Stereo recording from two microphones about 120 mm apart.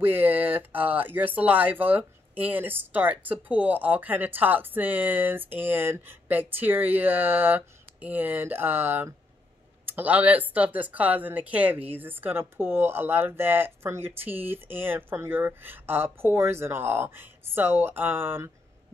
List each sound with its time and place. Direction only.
0.0 s speech: 15° right (ahead or behind)